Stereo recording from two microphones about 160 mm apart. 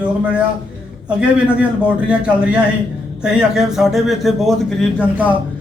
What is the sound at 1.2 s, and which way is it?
A man's voice, 5° right (ahead or behind).